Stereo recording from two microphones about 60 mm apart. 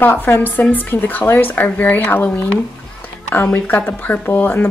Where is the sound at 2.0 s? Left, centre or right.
Left.